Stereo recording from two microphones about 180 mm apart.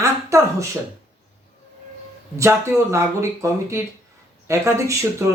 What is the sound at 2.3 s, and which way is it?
Speech, 15° right (ahead or behind).